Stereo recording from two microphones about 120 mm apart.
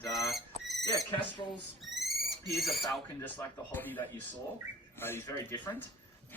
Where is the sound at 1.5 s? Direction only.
Centre (ahead or behind).